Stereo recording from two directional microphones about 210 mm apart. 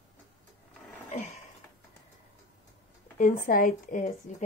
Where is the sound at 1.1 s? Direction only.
35° left (ahead or behind).